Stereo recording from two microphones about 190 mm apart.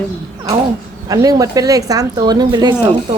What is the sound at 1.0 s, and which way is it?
Speech, 20° right (ahead or behind).